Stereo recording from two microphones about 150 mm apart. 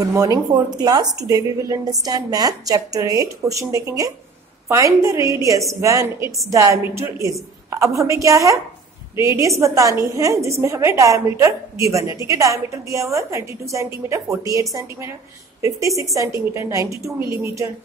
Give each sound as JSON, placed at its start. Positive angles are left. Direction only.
{"t": 0.0, "sound": "speech", "side_deg": -25}
{"t": 9.6, "sound": "speech", "side_deg": -20}